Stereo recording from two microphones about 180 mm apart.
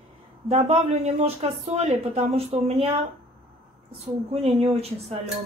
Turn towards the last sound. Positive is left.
turn(degrees=-35)  # may be behind; listen again after turning